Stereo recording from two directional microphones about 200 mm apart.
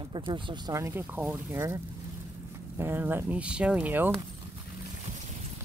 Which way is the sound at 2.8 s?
10° right (ahead or behind).